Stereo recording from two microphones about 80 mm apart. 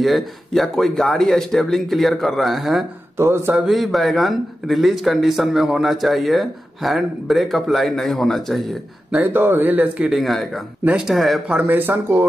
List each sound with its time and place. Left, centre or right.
0.0 s speech: centre
3.2 s speech: right
3.6 s speech: centre
9.1 s speech: right
10.0 s speech: centre
11.5 s speech: right